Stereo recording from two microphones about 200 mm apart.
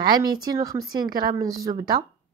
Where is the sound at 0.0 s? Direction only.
20° right (ahead or behind).